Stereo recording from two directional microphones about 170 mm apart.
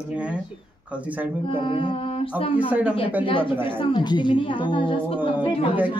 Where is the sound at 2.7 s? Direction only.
10° right (ahead or behind).